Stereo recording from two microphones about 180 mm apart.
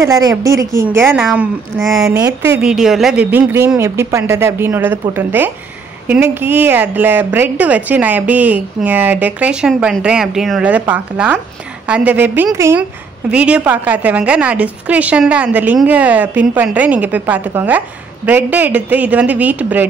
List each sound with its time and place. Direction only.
0.0 s a woman's voice: 20° right (ahead or behind); by 2.0 s centre (ahead or behind)
2.0 s a woman's voice: 15° right (ahead or behind)
2.6 s a woman's voice: centre (ahead or behind)